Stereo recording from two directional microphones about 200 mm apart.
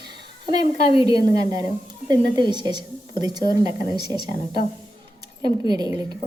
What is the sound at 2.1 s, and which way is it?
A woman's voice, 20° right (ahead or behind).